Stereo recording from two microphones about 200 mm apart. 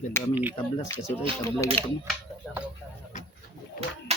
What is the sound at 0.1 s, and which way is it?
Speech, 10° left (ahead or behind).